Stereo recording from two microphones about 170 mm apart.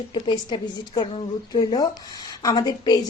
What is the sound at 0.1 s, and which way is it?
A woman's voice, 25° left (ahead or behind).